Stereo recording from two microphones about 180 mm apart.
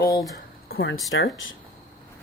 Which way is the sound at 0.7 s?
65° left (ahead or behind).